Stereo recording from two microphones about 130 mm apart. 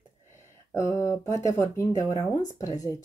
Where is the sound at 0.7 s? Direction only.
20° left (ahead or behind).